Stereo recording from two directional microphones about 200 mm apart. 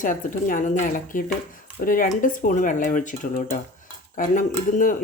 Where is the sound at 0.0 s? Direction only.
40° left (ahead or behind).